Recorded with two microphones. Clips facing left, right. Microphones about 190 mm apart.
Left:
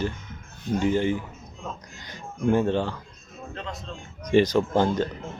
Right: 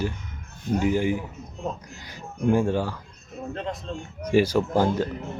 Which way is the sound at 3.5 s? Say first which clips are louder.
Right 4 dB; 50° right (ahead or behind).